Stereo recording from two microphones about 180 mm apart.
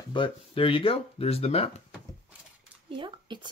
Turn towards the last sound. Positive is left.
turn(degrees=-25)  # may be behind; listen again after turning